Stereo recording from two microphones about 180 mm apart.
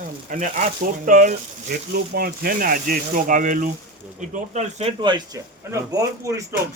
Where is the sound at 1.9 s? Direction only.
55° right (ahead or behind); by 5.2 s 30° right (ahead or behind).